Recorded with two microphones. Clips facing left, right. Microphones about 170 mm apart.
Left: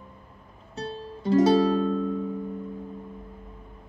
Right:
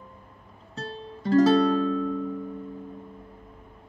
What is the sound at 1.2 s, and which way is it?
Music, 10° left (ahead or behind).